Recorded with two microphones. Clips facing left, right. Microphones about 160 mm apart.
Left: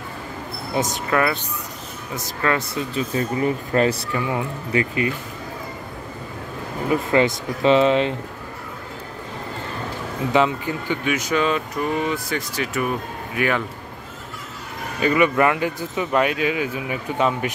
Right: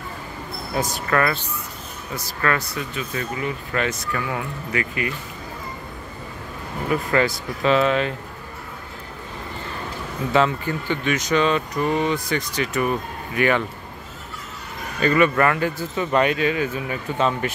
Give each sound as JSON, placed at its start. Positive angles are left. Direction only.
{"t": 0.7, "sound": "speech", "side_deg": 20}
{"t": 2.9, "sound": "speech", "side_deg": 35}
{"t": 4.1, "sound": "speech", "side_deg": 20}
{"t": 6.9, "sound": "speech", "side_deg": 20}
{"t": 10.3, "sound": "speech", "side_deg": 15}
{"t": 15.0, "sound": "speech", "side_deg": 10}